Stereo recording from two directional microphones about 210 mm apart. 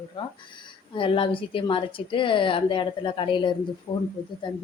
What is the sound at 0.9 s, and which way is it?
Speech, 25° left (ahead or behind).